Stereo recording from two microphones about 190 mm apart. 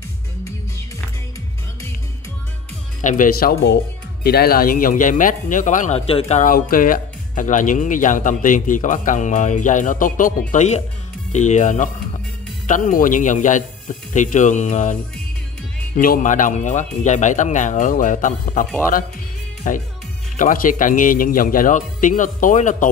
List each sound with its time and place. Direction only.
3.0 s speech: 40° left (ahead or behind)
16.0 s speech: 45° left (ahead or behind)